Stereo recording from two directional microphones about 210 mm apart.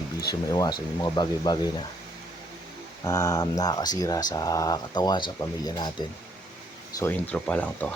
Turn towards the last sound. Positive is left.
turn(degrees=5)  # may be behind; listen again after turning